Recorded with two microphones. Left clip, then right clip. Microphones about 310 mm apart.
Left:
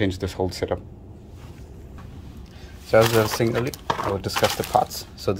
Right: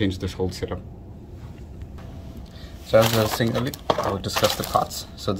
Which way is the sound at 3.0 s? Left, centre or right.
Left.